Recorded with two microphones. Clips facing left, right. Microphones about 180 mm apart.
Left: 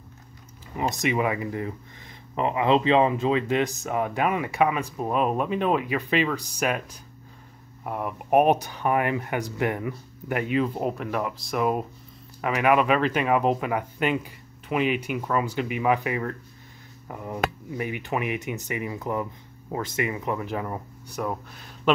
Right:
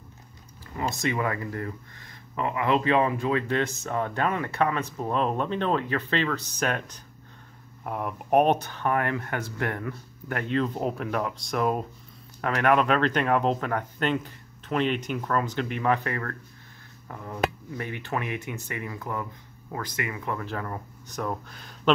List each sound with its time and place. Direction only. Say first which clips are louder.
0.7 s speech: left 3 dB; 15° left (ahead or behind); by 21.9 s centre (ahead or behind)